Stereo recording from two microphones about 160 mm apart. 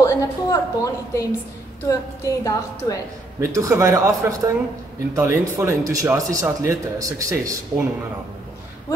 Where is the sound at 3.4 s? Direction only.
20° right (ahead or behind).